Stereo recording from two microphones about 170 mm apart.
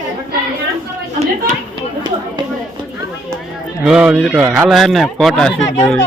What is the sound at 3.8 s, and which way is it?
Speech, 5° right (ahead or behind).